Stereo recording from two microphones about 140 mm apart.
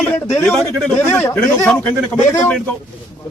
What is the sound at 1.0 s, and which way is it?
Speech, 15° left (ahead or behind).